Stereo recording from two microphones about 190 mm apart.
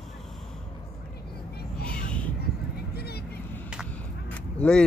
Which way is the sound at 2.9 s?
55° left (ahead or behind).